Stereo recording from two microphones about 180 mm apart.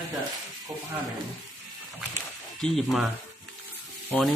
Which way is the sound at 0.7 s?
15° right (ahead or behind).